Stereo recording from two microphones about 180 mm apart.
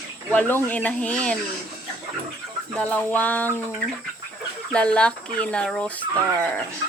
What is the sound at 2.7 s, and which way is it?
Speech, 10° left (ahead or behind).